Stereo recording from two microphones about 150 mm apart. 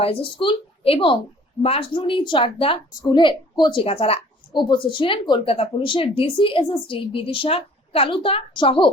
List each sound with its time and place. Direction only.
0.0 s a woman's voice: 40° left (ahead or behind)